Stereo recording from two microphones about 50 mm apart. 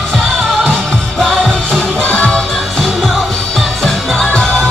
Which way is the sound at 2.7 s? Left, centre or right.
Centre.